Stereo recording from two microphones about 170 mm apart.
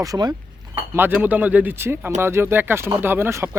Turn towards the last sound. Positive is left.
turn(degrees=-15)  # may be behind; listen again after turning